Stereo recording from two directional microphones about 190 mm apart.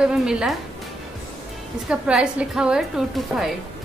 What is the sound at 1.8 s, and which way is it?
A woman's voice, 5° right (ahead or behind).